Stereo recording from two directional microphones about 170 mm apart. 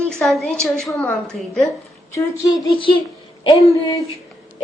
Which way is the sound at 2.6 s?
30° left (ahead or behind).